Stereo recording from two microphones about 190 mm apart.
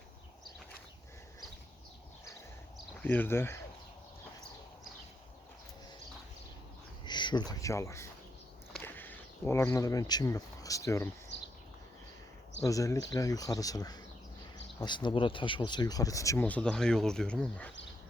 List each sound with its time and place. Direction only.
3.0 s speech: 10° left (ahead or behind)
7.0 s speech: 25° left (ahead or behind)
11.3 s a sound: 65° left (ahead or behind)
12.6 s speech: 15° left (ahead or behind)